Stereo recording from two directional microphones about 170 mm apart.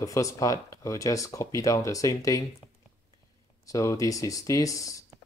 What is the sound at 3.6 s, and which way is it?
Speech, 20° left (ahead or behind).